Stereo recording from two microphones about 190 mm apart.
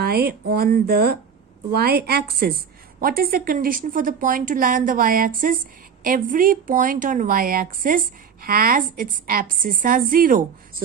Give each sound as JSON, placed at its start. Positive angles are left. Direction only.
{"t": 0.0, "sound": "speech", "side_deg": -55}